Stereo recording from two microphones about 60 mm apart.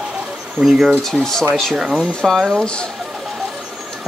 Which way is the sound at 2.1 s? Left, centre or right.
Centre.